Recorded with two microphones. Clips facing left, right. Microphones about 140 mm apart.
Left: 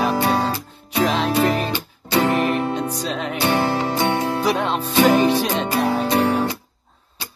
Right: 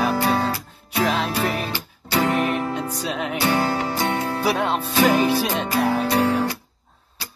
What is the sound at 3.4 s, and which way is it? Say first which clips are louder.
Music: left 2 dB; 25° left (ahead or behind).